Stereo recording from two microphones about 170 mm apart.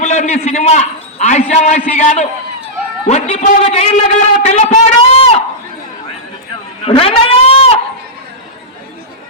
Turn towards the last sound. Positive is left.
turn(degrees=35)  # may be behind; listen again after turning